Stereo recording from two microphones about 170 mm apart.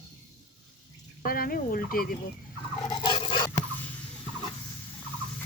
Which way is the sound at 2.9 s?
30° left (ahead or behind).